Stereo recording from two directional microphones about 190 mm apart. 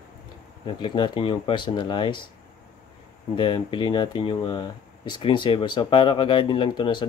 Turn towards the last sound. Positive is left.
turn(degrees=25)  # may be behind; listen again after turning